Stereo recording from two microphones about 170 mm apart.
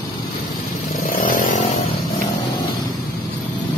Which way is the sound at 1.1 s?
55° left (ahead or behind).